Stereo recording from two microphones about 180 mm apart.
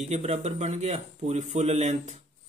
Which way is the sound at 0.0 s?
35° right (ahead or behind).